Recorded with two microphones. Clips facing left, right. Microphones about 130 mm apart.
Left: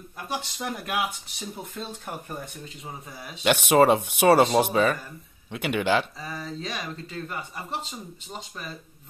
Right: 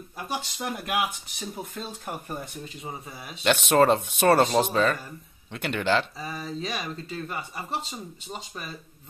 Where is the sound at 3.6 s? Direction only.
10° left (ahead or behind).